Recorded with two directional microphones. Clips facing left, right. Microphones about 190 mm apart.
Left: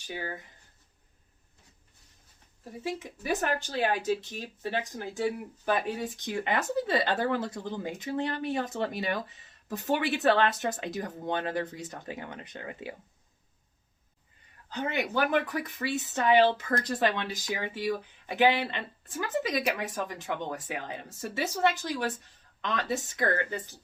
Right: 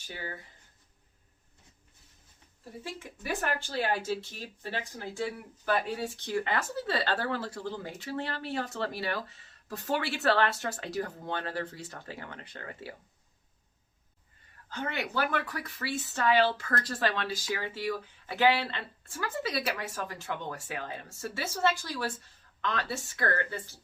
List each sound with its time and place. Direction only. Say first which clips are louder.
0.1 s speech: left 4 dB; 15° left (ahead or behind)
2.8 s speech: left 6 dB; 20° left (ahead or behind)
14.7 s speech: left 4 dB; 15° left (ahead or behind)